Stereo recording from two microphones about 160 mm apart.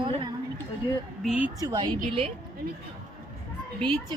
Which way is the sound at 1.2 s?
5° right (ahead or behind).